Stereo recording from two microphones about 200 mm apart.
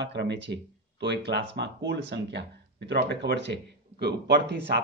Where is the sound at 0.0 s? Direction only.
60° right (ahead or behind).